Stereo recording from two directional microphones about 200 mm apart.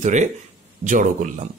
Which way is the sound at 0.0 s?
35° right (ahead or behind).